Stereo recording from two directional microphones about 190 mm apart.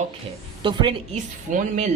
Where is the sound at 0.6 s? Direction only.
25° right (ahead or behind).